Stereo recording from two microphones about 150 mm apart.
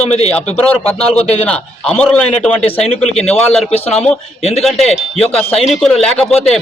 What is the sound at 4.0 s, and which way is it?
Speech, 45° left (ahead or behind).